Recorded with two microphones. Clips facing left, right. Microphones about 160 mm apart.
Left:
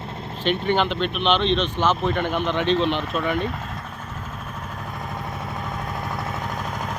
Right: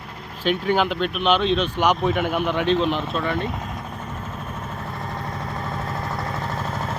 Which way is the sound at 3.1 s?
5° left (ahead or behind).